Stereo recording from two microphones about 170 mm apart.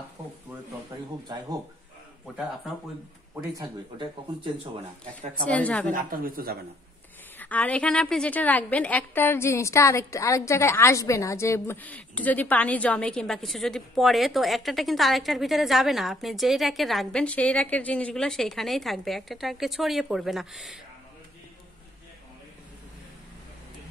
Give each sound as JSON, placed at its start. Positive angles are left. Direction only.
{"t": 0.8, "sound": "speech", "side_deg": -20}
{"t": 3.3, "sound": "speech", "side_deg": -25}
{"t": 5.5, "sound": "a woman's voice", "side_deg": 10}
{"t": 5.9, "sound": "a woman's voice", "side_deg": -55}
{"t": 7.3, "sound": "a woman's voice", "side_deg": 10}